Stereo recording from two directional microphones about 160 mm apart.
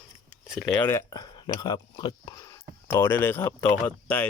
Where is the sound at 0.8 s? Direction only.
15° left (ahead or behind).